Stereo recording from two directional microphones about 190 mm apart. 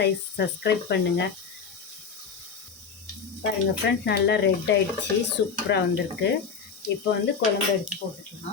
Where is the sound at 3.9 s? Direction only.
65° left (ahead or behind).